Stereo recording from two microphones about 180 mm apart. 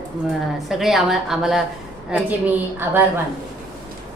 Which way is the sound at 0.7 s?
Centre (ahead or behind).